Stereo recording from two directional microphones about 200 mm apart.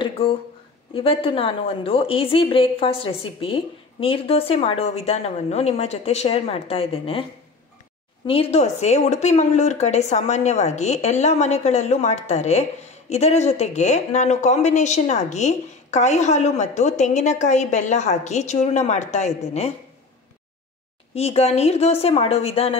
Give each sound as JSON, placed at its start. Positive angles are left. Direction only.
{"t": 0.0, "sound": "a sound", "side_deg": 25}
{"t": 0.9, "sound": "a woman's voice", "side_deg": 25}
{"t": 8.3, "sound": "a woman's voice", "side_deg": 30}
{"t": 21.1, "sound": "a woman's voice", "side_deg": 30}